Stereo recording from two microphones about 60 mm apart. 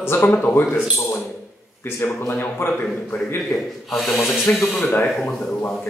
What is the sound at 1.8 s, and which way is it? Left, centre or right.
Speech, left.